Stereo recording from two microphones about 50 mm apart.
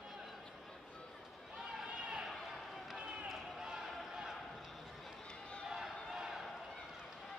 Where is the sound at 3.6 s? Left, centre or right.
Centre.